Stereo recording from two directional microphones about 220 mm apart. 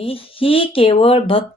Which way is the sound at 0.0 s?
25° left (ahead or behind).